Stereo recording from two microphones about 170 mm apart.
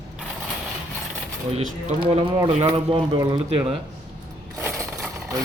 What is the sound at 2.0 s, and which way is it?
A man's voice, 30° right (ahead or behind).